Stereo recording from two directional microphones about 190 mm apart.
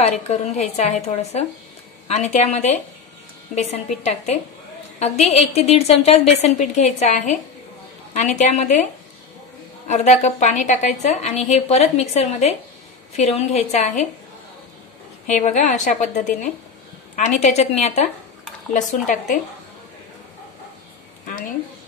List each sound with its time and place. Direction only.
0.0 s a woman's voice: 35° left (ahead or behind)
4.9 s a sound: 35° left (ahead or behind)
5.3 s a woman's voice: 30° left (ahead or behind)
9.8 s a woman's voice: 35° left (ahead or behind)
15.2 s a woman's voice: 40° left (ahead or behind)